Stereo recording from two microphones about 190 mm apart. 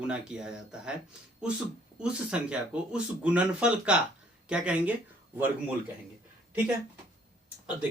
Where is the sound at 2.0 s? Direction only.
5° right (ahead or behind).